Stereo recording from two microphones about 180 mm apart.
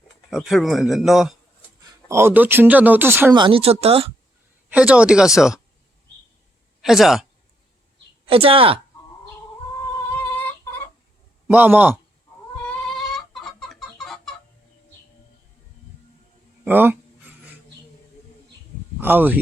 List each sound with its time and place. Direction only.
0.3 s a man's voice: centre (ahead or behind)
2.0 s speech: 15° right (ahead or behind)
3.3 s speech: 30° right (ahead or behind)
4.7 s a man's voice: 5° right (ahead or behind)
6.8 s a man's voice: centre (ahead or behind)
8.3 s speech: 30° right (ahead or behind)
10.3 s a sound: 10° left (ahead or behind)
11.4 s speech: 10° right (ahead or behind)
12.6 s chicken: 5° left (ahead or behind)
16.6 s speech: 10° right (ahead or behind)
18.9 s speech: 10° right (ahead or behind)